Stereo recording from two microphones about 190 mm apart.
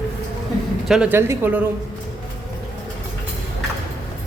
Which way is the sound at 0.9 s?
10° right (ahead or behind).